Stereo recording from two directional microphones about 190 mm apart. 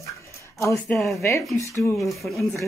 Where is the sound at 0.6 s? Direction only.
15° left (ahead or behind).